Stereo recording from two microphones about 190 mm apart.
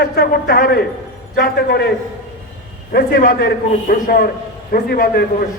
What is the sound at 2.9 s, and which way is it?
A man's voice, 50° left (ahead or behind).